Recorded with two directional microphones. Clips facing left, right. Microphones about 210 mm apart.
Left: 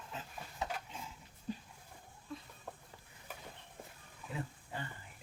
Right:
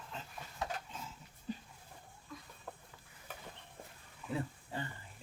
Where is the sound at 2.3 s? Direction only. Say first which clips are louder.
Left 5 dB; 30° left (ahead or behind).